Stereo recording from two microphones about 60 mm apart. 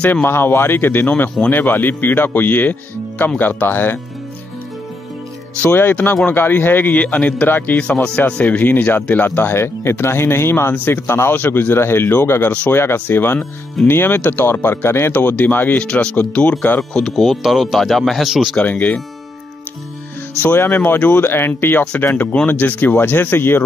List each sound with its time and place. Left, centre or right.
0.0 s speech: left
5.7 s speech: left
7.8 s speech: centre; by 10.7 s left
10.7 s speech: left
11.1 s speech: left
15.1 s speech: left
15.9 s speech: centre
16.2 s speech: left
17.1 s speech: centre
18.6 s speech: left
20.5 s speech: left